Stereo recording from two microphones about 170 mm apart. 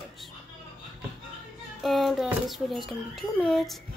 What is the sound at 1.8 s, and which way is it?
A child's voice, centre (ahead or behind).